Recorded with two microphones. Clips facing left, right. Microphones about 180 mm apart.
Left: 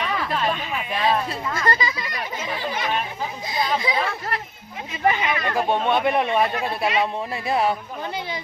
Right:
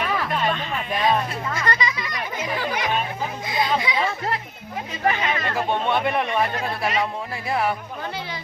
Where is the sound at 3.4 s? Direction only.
30° left (ahead or behind).